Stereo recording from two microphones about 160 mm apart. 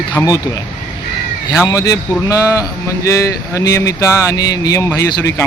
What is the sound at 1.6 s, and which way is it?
A man's voice, 20° left (ahead or behind).